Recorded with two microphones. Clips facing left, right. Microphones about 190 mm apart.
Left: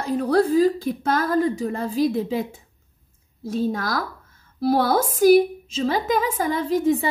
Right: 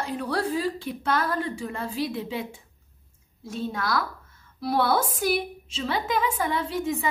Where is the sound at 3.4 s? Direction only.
40° left (ahead or behind).